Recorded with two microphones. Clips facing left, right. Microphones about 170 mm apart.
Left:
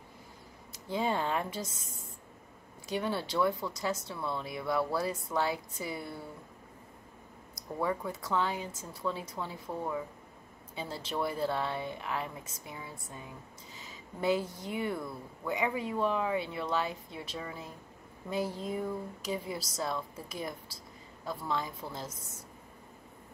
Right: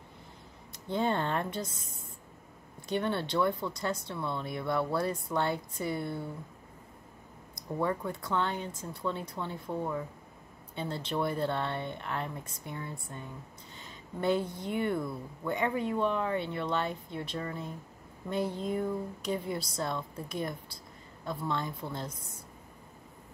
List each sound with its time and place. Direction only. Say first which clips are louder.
0.8 s speech: right 1 dB; 5° left (ahead or behind)
2.9 s speech: right 2 dB; 5° left (ahead or behind)
7.8 s speech: right 1 dB; 5° left (ahead or behind)